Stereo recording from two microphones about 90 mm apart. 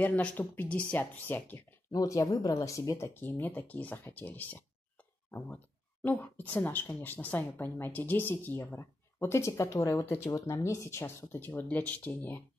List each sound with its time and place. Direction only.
0.0 s speech: 15° left (ahead or behind)
1.9 s speech: 40° left (ahead or behind)
3.2 s speech: 20° left (ahead or behind)
6.0 s speech: 20° left (ahead or behind)
11.3 s speech: 20° left (ahead or behind)